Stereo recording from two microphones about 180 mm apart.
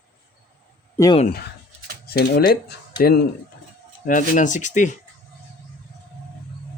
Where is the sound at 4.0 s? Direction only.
45° left (ahead or behind).